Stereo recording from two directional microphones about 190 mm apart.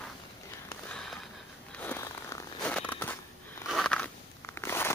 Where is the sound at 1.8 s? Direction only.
10° left (ahead or behind).